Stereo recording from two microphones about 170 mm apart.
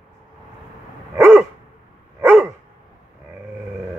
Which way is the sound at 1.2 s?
10° right (ahead or behind).